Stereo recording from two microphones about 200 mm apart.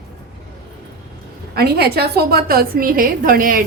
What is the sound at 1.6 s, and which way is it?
A woman's voice, 50° right (ahead or behind).